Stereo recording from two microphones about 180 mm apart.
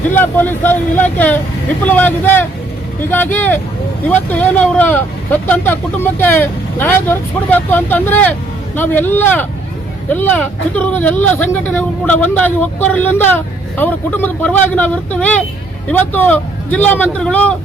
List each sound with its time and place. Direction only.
0.1 s speech: 10° left (ahead or behind)